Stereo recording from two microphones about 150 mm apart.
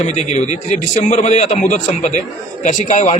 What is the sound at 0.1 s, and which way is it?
A man's voice, 50° left (ahead or behind).